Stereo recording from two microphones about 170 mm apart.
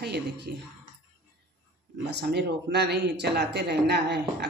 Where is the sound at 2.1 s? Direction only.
75° right (ahead or behind).